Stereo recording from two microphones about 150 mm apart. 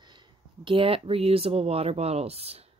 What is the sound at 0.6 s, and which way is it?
Speech, 35° right (ahead or behind).